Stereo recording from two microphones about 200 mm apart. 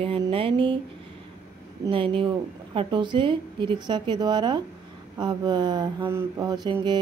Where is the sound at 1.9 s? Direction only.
25° right (ahead or behind).